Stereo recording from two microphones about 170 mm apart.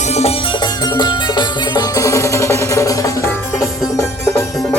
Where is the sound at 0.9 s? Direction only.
25° left (ahead or behind).